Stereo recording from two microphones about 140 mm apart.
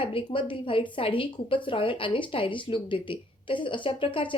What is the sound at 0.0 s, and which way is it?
Speech, 40° left (ahead or behind).